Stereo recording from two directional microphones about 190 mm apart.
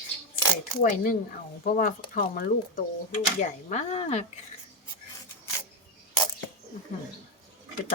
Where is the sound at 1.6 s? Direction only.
45° left (ahead or behind).